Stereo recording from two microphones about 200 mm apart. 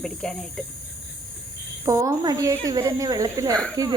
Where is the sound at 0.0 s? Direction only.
5° left (ahead or behind).